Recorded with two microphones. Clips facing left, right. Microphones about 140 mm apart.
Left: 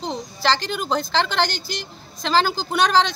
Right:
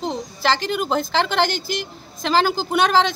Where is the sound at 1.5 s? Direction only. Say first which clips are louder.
Right 5 dB; 50° right (ahead or behind).